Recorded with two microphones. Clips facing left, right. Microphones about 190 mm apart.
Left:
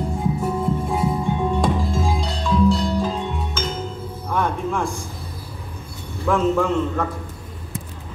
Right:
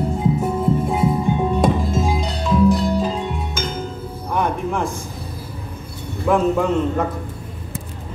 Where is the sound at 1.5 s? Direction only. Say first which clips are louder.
Right 3 dB; 20° right (ahead or behind).